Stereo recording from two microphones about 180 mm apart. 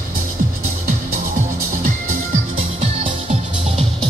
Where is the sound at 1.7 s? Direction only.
50° right (ahead or behind).